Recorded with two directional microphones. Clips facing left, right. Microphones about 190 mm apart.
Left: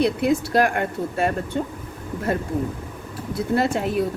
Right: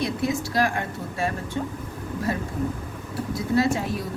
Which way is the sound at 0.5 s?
60° left (ahead or behind).